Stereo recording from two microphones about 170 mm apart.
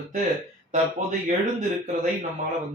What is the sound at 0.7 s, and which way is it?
Speech, 45° right (ahead or behind).